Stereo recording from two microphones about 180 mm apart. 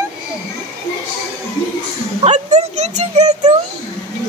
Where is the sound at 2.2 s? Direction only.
40° right (ahead or behind).